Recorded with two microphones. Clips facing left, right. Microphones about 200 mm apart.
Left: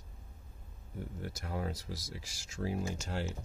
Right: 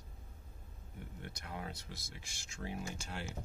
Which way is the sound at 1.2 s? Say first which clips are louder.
Left 7 dB; 40° left (ahead or behind).